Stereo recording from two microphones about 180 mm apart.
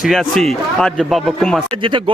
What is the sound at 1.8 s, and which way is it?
Speech, 30° right (ahead or behind).